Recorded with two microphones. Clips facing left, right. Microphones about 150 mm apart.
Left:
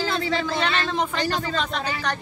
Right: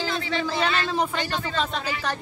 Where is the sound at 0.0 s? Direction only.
35° left (ahead or behind).